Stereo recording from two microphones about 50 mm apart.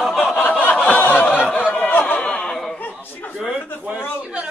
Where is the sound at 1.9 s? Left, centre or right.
Left.